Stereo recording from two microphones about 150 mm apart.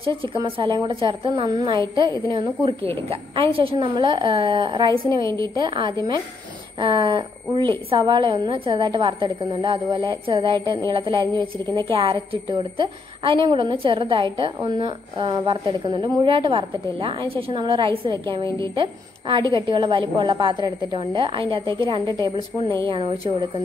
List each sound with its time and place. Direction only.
0.0 s a woman's voice: 35° right (ahead or behind)
5.2 s a woman's voice: 20° left (ahead or behind)
5.6 s a woman's voice: 30° right (ahead or behind)